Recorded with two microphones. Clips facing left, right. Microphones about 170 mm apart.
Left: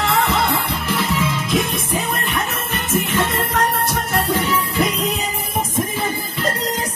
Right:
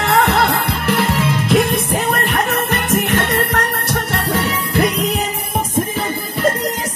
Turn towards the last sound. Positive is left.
turn(degrees=-75)  # may be behind; listen again after turning